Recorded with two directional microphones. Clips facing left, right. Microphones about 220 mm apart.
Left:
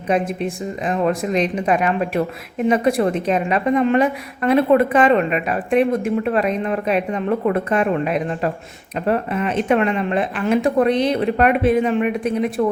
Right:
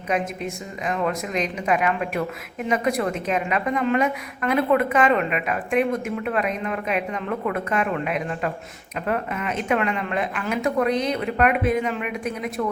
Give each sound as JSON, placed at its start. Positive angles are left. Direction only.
{"t": 0.1, "sound": "a woman's voice", "side_deg": 30}